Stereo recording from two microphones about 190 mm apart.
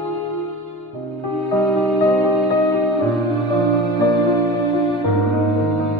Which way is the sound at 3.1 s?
Centre (ahead or behind).